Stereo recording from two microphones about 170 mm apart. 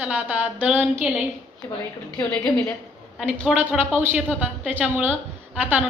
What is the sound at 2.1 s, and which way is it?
A woman's voice, 10° left (ahead or behind).